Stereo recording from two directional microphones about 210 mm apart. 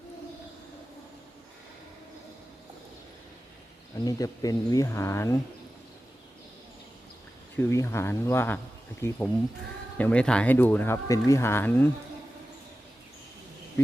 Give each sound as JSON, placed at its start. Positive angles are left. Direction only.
{"t": 4.0, "sound": "speech", "side_deg": 15}
{"t": 7.5, "sound": "speech", "side_deg": 10}